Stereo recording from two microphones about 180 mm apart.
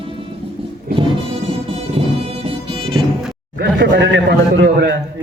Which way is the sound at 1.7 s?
35° right (ahead or behind).